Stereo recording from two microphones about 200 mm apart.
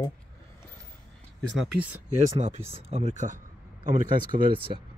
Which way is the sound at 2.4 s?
30° right (ahead or behind).